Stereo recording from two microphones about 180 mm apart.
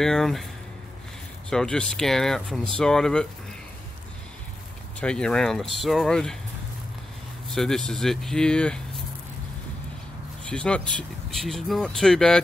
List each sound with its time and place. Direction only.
0.0 s speech: centre (ahead or behind)
1.5 s speech: 5° left (ahead or behind)
5.0 s speech: 5° left (ahead or behind)
7.5 s speech: 5° left (ahead or behind)
10.4 s speech: 5° left (ahead or behind)